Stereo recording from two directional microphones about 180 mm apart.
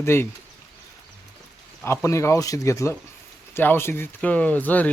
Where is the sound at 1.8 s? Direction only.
15° left (ahead or behind).